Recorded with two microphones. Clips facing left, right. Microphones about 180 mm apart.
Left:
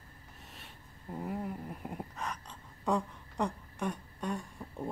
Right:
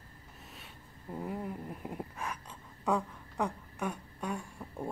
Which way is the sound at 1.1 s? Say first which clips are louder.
Even; centre (ahead or behind).